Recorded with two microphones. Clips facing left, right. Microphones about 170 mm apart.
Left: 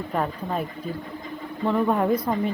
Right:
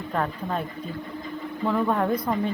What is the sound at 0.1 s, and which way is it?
Speech, 10° left (ahead or behind).